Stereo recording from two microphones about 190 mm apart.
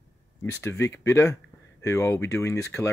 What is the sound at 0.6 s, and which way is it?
Speech, 10° left (ahead or behind).